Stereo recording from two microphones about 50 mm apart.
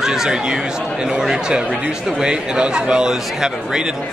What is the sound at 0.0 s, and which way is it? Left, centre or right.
A man's voice, centre.